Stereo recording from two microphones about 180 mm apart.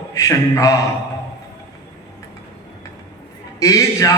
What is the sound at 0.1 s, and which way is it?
Speech, 15° left (ahead or behind).